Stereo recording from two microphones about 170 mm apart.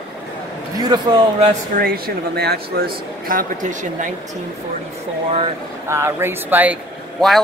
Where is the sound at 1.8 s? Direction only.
65° right (ahead or behind).